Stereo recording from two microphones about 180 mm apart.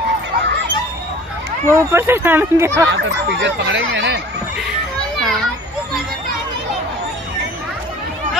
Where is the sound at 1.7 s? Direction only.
15° right (ahead or behind).